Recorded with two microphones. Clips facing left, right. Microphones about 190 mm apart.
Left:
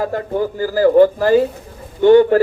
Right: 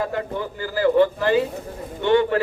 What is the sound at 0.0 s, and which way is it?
A man's voice, 40° left (ahead or behind).